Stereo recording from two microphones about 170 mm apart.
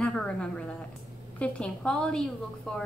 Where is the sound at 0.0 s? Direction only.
5° left (ahead or behind).